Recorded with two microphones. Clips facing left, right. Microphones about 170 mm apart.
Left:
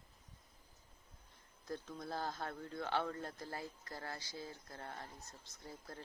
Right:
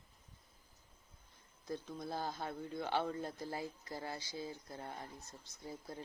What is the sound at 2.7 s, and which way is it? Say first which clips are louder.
Speech: right 2 dB; 15° right (ahead or behind).